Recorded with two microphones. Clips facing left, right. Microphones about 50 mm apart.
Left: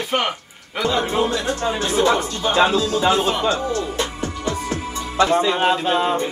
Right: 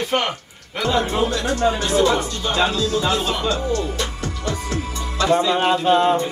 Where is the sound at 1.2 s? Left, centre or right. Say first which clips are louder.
Right 2 dB; left.